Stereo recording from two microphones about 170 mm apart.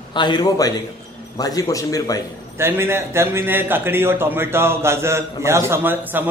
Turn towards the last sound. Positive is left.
turn(degrees=-10)  # may be behind; listen again after turning